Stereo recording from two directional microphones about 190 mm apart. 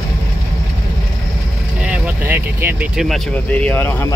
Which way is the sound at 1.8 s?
5° right (ahead or behind).